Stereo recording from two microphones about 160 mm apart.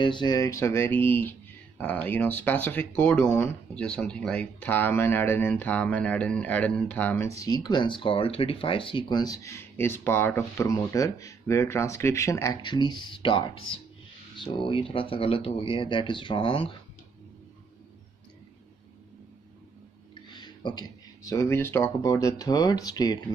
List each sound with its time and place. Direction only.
0.0 s speech: 30° left (ahead or behind); by 7.2 s 10° left (ahead or behind)
7.3 s speech: 25° left (ahead or behind)
20.3 s speech: 30° left (ahead or behind)